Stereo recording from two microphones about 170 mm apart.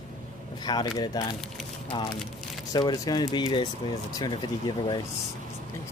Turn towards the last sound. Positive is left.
turn(degrees=25)  # may be behind; listen again after turning